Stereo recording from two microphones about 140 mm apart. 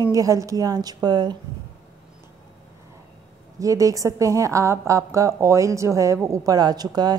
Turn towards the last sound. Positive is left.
turn(degrees=-30)  # may be behind; listen again after turning